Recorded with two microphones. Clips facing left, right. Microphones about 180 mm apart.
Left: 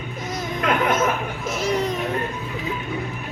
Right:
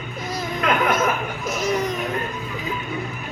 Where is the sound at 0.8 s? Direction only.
25° left (ahead or behind).